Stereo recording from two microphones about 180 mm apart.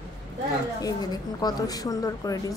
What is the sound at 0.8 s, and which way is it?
A woman's voice, 20° left (ahead or behind).